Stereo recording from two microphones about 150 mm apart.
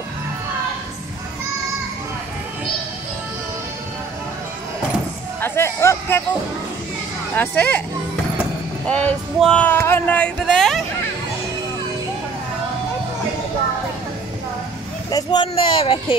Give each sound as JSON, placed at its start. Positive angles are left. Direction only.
{"t": 5.4, "sound": "a sound", "side_deg": 15}
{"t": 7.3, "sound": "speech", "side_deg": 10}
{"t": 8.8, "sound": "speech", "side_deg": 5}
{"t": 15.0, "sound": "speech", "side_deg": 25}